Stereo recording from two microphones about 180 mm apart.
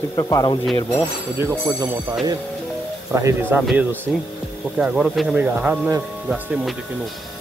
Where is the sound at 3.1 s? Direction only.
10° right (ahead or behind).